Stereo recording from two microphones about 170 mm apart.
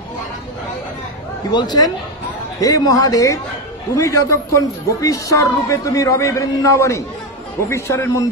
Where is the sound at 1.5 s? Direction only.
25° left (ahead or behind).